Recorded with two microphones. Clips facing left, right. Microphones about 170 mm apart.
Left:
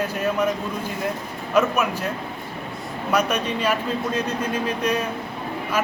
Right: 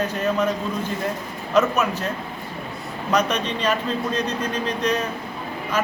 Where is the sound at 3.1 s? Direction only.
10° left (ahead or behind).